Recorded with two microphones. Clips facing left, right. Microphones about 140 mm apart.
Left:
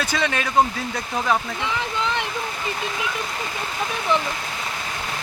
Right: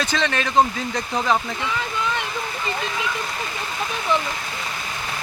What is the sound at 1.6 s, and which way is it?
Speech, 20° left (ahead or behind).